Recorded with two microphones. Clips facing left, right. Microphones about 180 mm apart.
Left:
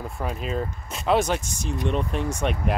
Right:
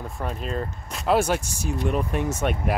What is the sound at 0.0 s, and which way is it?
Speech, centre (ahead or behind).